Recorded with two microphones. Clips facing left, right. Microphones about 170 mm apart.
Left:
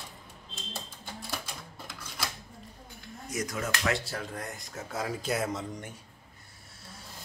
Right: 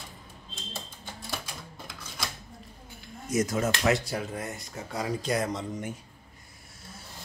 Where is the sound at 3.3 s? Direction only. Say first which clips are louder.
Right 7 dB; 25° right (ahead or behind).